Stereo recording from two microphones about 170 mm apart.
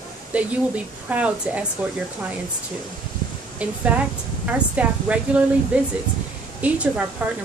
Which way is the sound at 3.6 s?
5° right (ahead or behind).